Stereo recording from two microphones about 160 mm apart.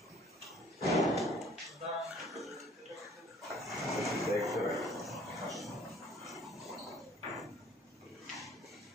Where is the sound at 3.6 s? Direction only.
Centre (ahead or behind).